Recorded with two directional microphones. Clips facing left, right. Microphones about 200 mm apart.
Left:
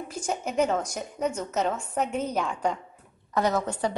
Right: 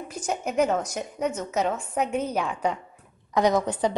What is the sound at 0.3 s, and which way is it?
A woman's voice, 5° right (ahead or behind).